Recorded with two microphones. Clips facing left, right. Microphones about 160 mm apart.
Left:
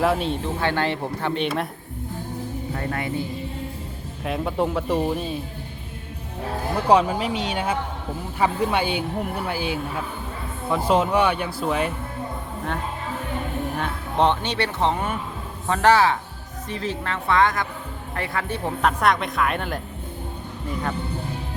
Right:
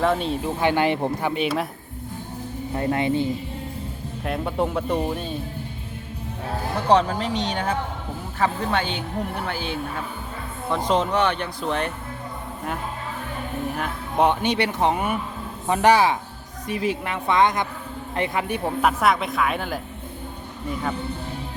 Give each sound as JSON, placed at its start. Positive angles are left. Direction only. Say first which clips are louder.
{"t": 0.0, "sound": "speech", "louder": "even", "side_deg": 5}
{"t": 0.4, "sound": "speech", "louder": "right 6 dB", "side_deg": -15}
{"t": 2.7, "sound": "speech", "louder": "right 7 dB", "side_deg": -20}
{"t": 4.2, "sound": "speech", "louder": "left 1 dB", "side_deg": 0}
{"t": 6.8, "sound": "speech", "louder": "left 1 dB", "side_deg": 10}
{"t": 13.7, "sound": "speech", "louder": "even", "side_deg": -10}